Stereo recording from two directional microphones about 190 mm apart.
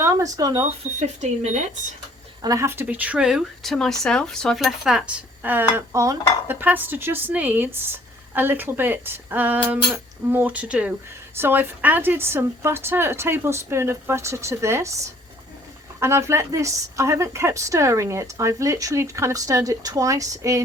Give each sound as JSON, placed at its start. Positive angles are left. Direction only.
{"t": 0.0, "sound": "speech", "side_deg": -15}
{"t": 0.9, "sound": "speech", "side_deg": -35}
{"t": 2.4, "sound": "speech", "side_deg": -15}
{"t": 16.0, "sound": "speech", "side_deg": -15}